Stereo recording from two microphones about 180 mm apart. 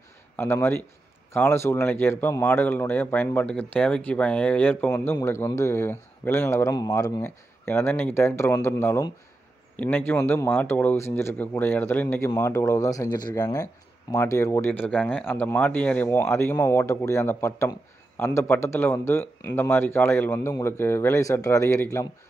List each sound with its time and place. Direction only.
0.4 s speech: 10° left (ahead or behind)